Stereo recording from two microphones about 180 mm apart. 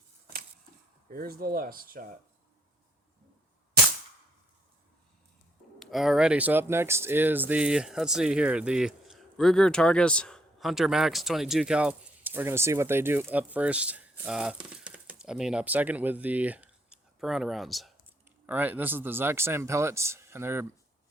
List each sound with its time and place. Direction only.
1.1 s speech: 55° right (ahead or behind)
5.8 s speech: centre (ahead or behind)